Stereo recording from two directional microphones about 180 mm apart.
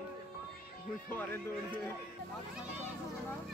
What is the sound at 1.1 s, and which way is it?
Speech, 10° left (ahead or behind).